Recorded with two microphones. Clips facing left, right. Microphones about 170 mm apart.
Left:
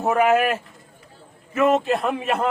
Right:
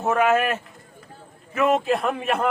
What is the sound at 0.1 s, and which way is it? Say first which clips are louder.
A man's voice: left 2 dB; 5° left (ahead or behind).